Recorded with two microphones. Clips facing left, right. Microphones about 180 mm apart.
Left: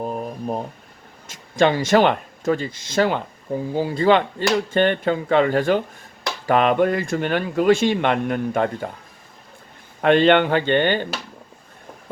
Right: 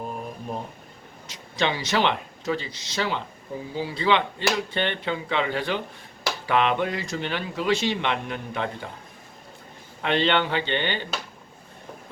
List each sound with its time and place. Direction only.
0.0 s a sound: 40° left (ahead or behind)
1.3 s speech: 50° left (ahead or behind)
10.0 s speech: 50° left (ahead or behind)